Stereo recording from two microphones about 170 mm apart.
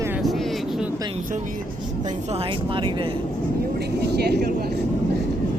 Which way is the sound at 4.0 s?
75° right (ahead or behind).